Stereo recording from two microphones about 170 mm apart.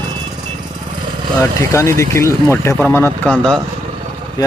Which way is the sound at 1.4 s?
15° left (ahead or behind).